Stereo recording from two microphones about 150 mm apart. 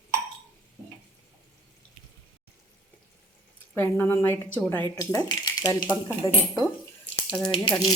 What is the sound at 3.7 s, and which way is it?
Speech, 15° left (ahead or behind).